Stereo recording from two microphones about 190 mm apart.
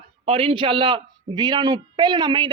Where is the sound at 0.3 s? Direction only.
30° right (ahead or behind).